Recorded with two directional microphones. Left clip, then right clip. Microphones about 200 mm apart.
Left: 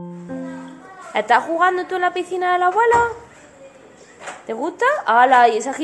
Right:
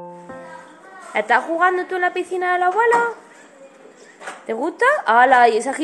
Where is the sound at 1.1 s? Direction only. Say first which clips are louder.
Left 1 dB; 10° left (ahead or behind).